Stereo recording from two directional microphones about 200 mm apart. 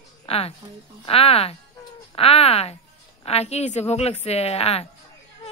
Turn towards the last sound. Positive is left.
turn(degrees=30)  # may be behind; listen again after turning